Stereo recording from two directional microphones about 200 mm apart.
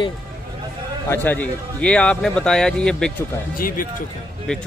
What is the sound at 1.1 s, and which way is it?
A man's voice, 10° left (ahead or behind).